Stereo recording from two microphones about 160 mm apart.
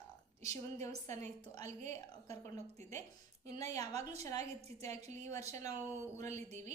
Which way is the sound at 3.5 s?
20° left (ahead or behind).